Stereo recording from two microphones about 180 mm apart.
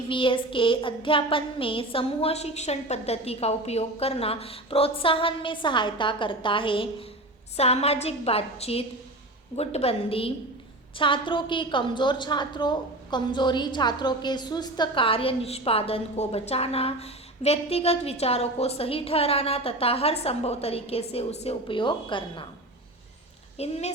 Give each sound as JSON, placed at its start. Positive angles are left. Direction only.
{"t": 0.1, "sound": "child singing", "side_deg": 30}
{"t": 7.5, "sound": "a woman's voice", "side_deg": 35}
{"t": 23.6, "sound": "a woman's voice", "side_deg": 35}